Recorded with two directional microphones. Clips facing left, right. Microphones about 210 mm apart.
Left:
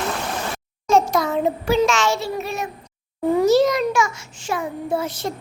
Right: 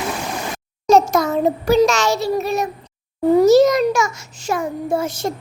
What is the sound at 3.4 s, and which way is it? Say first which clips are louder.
A child's voice: right 5 dB; 40° right (ahead or behind).